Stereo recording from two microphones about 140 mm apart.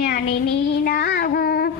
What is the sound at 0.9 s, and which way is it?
Child singing, 90° left.